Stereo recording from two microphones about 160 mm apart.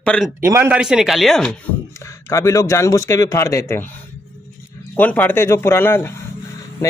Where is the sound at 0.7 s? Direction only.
5° right (ahead or behind).